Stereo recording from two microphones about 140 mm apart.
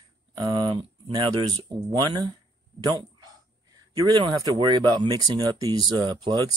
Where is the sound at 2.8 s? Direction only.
30° right (ahead or behind).